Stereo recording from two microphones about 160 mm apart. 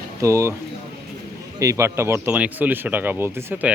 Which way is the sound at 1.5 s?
20° right (ahead or behind).